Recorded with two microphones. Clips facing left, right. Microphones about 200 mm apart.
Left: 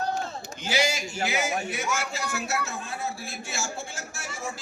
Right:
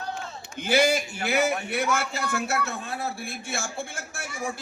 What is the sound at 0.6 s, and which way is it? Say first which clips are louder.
A man's voice: right 5 dB; 55° right (ahead or behind).